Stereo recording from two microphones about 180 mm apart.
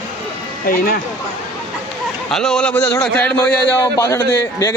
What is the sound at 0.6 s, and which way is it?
Speech, 50° left (ahead or behind).